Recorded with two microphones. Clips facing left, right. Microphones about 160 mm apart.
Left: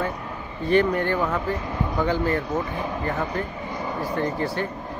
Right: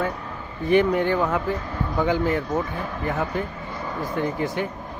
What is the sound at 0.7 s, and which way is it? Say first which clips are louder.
A man's voice: right 1 dB; 15° right (ahead or behind).